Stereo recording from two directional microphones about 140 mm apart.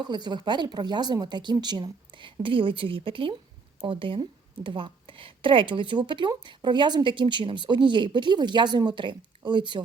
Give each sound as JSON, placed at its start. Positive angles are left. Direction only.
{"t": 0.0, "sound": "speech", "side_deg": -30}